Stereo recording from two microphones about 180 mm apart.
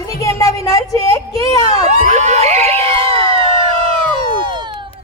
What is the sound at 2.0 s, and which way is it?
Speech, 40° right (ahead or behind).